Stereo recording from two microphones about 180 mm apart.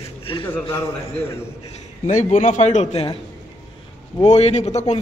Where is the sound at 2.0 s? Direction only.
40° left (ahead or behind).